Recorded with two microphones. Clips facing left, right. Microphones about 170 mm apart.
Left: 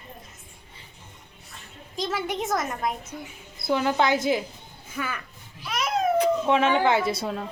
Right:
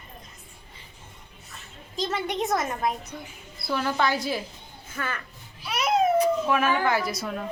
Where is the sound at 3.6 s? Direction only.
20° left (ahead or behind).